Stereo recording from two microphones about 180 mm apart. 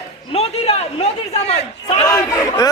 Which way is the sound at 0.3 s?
35° left (ahead or behind).